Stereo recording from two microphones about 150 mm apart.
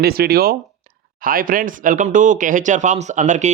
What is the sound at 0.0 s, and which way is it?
Speech, 90° right.